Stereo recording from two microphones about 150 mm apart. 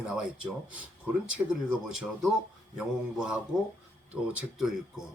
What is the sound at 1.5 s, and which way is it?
Speech, 5° right (ahead or behind).